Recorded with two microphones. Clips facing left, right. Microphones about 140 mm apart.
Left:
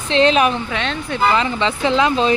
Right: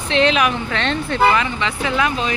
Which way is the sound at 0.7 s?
5° left (ahead or behind).